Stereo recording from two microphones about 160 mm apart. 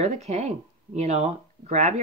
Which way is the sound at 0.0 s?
45° right (ahead or behind).